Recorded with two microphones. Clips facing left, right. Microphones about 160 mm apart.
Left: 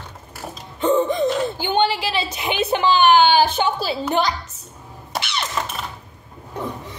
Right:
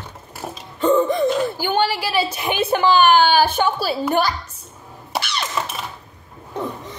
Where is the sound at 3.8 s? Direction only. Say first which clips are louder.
Right 1 dB; 20° left (ahead or behind).